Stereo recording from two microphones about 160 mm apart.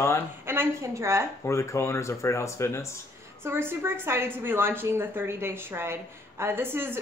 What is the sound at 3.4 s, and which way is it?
A woman's voice, 15° right (ahead or behind).